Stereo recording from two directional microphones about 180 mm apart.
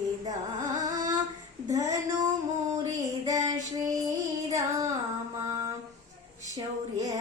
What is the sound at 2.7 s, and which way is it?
Music, 20° right (ahead or behind).